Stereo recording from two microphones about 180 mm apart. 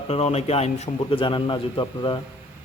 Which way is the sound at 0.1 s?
35° left (ahead or behind).